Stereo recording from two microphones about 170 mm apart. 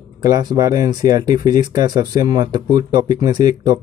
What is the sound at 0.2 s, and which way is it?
Speech, 25° right (ahead or behind).